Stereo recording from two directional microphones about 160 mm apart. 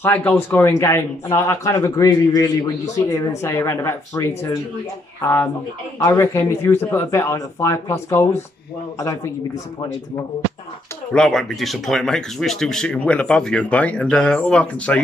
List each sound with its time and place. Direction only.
0.0 s speech: 10° left (ahead or behind)
11.1 s speech: centre (ahead or behind)